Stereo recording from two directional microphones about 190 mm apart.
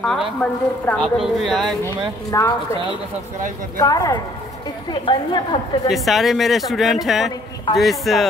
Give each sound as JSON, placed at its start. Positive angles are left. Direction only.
{"t": 0.0, "sound": "speech", "side_deg": 0}
{"t": 2.3, "sound": "a woman's voice", "side_deg": 15}
{"t": 3.8, "sound": "a woman's voice", "side_deg": 20}
{"t": 5.9, "sound": "speech", "side_deg": 0}